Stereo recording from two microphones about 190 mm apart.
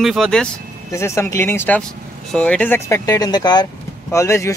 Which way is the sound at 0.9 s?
15° left (ahead or behind).